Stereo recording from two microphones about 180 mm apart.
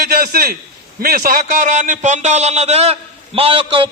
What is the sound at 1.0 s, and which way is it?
A man's voice, 55° right (ahead or behind).